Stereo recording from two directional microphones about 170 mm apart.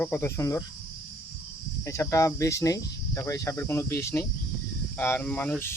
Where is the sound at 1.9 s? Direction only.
20° left (ahead or behind).